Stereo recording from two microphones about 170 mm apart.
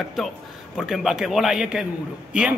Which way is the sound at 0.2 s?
Centre (ahead or behind).